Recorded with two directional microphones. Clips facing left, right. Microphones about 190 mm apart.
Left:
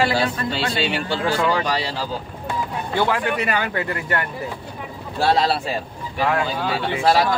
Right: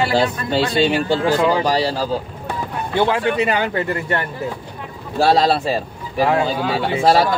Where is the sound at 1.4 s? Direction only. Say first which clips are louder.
Right 4 dB; 25° right (ahead or behind).